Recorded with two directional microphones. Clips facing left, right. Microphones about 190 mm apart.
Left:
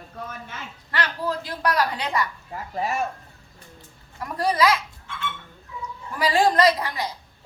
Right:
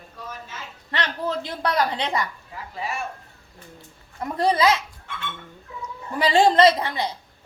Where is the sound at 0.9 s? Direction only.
25° right (ahead or behind).